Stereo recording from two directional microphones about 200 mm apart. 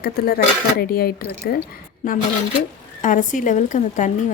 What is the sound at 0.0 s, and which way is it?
Speech, 50° left (ahead or behind).